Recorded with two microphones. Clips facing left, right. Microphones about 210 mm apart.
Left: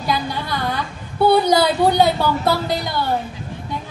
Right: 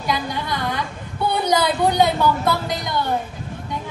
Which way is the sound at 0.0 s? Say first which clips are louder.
Left 1 dB; 35° left (ahead or behind).